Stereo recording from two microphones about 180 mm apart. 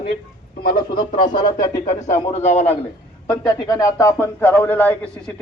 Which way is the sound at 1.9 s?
40° left (ahead or behind).